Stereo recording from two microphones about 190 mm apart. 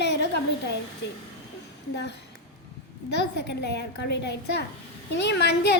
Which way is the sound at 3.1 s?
60° left (ahead or behind).